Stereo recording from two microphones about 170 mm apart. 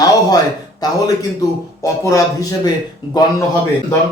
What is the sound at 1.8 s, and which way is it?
Speech, 20° left (ahead or behind).